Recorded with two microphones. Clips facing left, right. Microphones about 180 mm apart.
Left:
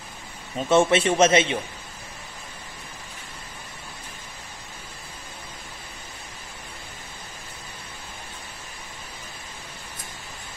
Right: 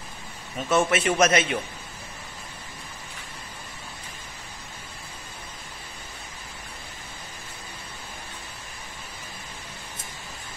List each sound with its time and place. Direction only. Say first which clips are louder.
0.7 s a man's voice: left 4 dB; 30° left (ahead or behind)